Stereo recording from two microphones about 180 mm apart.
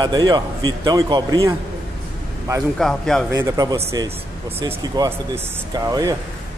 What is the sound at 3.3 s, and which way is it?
A man's voice, 15° right (ahead or behind).